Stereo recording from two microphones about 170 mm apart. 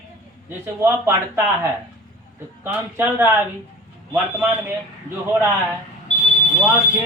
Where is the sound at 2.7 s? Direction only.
10° right (ahead or behind).